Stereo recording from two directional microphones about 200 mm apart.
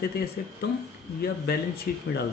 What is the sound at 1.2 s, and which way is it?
Speech, 50° left (ahead or behind).